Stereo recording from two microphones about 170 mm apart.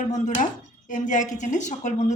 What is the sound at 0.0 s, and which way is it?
A woman's voice, 45° left (ahead or behind).